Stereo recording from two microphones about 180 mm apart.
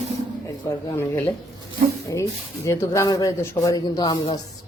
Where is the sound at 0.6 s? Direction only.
15° left (ahead or behind).